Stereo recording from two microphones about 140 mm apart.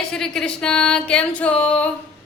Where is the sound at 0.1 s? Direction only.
5° left (ahead or behind).